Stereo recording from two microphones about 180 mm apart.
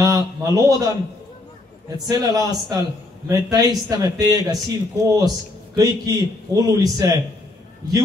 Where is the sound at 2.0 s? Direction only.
20° right (ahead or behind).